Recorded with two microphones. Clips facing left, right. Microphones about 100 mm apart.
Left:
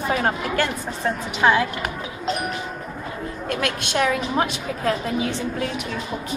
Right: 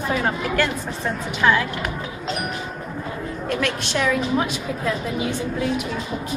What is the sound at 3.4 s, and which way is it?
A woman's voice, 50° left (ahead or behind).